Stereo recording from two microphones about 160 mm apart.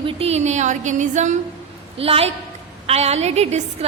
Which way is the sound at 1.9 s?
35° right (ahead or behind).